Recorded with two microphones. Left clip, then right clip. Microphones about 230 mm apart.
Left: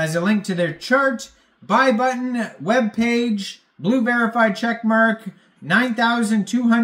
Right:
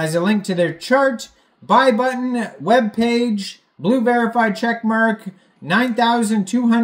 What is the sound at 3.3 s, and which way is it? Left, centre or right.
Speech, centre.